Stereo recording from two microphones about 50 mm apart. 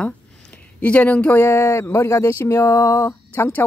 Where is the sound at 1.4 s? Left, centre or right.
Left.